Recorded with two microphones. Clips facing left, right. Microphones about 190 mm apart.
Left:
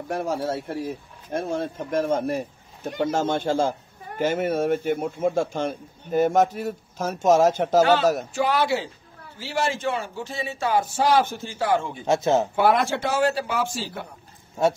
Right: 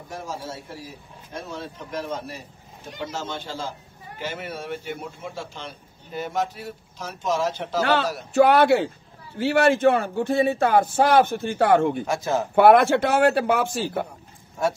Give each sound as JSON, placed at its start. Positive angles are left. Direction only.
{"t": 0.1, "sound": "a man's voice", "side_deg": 65}
{"t": 8.3, "sound": "speech", "side_deg": -60}
{"t": 12.1, "sound": "speech", "side_deg": 25}
{"t": 12.5, "sound": "speech", "side_deg": -60}
{"t": 14.6, "sound": "speech", "side_deg": 25}